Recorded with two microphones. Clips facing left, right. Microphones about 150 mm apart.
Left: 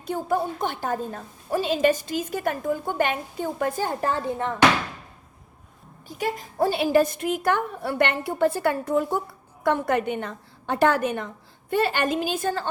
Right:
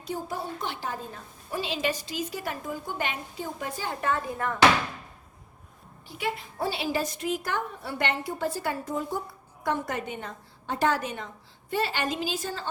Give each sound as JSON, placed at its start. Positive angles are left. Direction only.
{"t": 0.0, "sound": "a woman's voice", "side_deg": 55}
{"t": 4.1, "sound": "speech", "side_deg": 25}
{"t": 6.1, "sound": "a woman's voice", "side_deg": 45}